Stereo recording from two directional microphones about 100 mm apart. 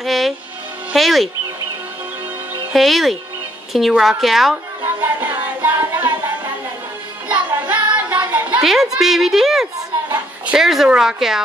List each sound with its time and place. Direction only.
0.0 s a woman's voice: centre (ahead or behind)
2.7 s a woman's voice: centre (ahead or behind)
5.2 s music: 25° right (ahead or behind)
7.2 s child singing: 15° right (ahead or behind)
8.3 s a sound: 15° right (ahead or behind)
8.6 s a woman's voice: 5° right (ahead or behind)